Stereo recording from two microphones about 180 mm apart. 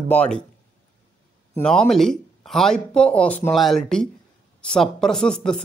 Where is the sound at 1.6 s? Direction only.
5° left (ahead or behind).